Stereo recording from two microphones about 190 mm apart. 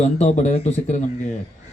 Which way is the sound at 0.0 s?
35° left (ahead or behind).